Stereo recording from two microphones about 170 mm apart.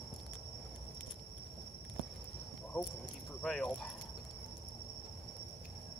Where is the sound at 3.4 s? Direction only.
5° left (ahead or behind).